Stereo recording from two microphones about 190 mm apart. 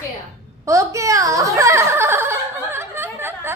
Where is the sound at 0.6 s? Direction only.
15° right (ahead or behind).